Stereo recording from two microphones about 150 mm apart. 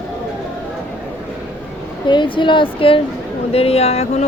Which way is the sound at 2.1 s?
30° left (ahead or behind).